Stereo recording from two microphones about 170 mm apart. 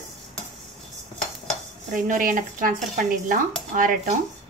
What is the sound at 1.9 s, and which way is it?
Speech, 50° right (ahead or behind).